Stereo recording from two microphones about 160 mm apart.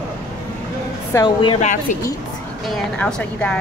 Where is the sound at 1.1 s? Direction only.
30° left (ahead or behind).